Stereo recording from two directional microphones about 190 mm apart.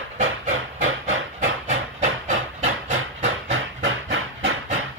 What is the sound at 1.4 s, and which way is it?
Steam, 40° right (ahead or behind).